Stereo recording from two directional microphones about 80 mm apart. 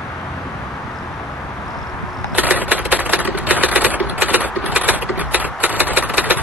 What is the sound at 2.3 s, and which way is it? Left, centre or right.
Typewriter, centre.